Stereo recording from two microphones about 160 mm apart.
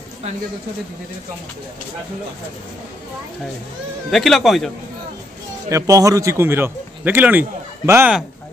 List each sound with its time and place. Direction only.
4.1 s speech: centre (ahead or behind)
5.7 s speech: 20° right (ahead or behind)